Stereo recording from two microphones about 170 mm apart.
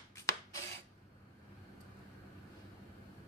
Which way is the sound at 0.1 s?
20° left (ahead or behind).